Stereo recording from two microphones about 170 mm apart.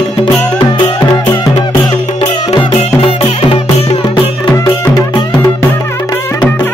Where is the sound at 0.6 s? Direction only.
25° left (ahead or behind).